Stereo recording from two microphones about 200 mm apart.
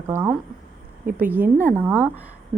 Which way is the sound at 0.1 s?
10° right (ahead or behind).